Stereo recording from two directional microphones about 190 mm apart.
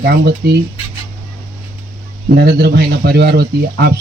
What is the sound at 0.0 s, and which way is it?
Speech, 60° right (ahead or behind).